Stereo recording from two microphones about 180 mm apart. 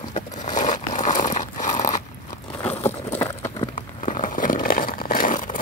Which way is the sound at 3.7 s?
45° left (ahead or behind).